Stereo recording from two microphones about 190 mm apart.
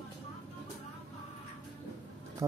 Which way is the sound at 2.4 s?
15° right (ahead or behind).